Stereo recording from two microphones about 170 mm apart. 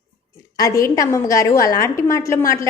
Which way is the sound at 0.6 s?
20° left (ahead or behind).